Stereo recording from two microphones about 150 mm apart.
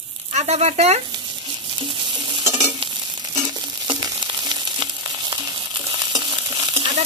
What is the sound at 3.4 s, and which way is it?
Frying, 30° right (ahead or behind).